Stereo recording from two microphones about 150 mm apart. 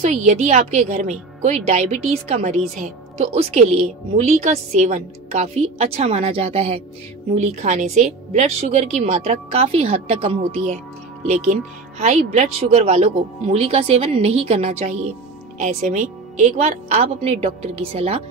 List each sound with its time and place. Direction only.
0.0 s a woman's voice: 50° right (ahead or behind)
12.0 s a woman's voice: 50° right (ahead or behind)